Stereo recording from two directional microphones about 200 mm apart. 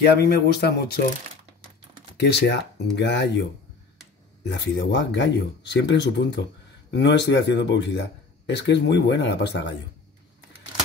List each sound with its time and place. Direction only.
0.0 s speech: 55° left (ahead or behind)
2.1 s speech: 55° left (ahead or behind)
4.5 s speech: 60° left (ahead or behind)